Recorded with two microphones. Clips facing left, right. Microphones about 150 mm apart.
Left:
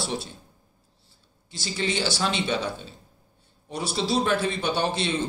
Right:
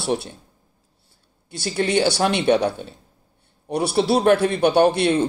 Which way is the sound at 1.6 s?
60° right (ahead or behind).